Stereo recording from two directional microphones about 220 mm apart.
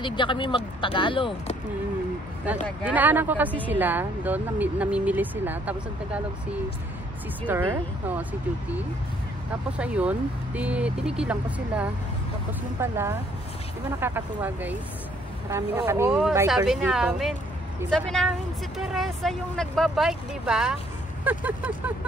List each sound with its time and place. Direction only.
0.0 s speech: 20° left (ahead or behind)
2.8 s speech: 5° right (ahead or behind)
7.4 s speech: 10° right (ahead or behind)